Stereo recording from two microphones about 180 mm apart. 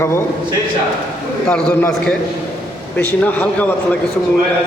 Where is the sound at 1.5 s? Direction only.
5° left (ahead or behind).